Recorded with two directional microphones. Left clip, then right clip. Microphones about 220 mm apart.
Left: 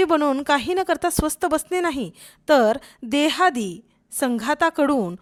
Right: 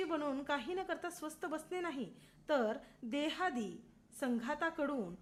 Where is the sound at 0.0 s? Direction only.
45° left (ahead or behind).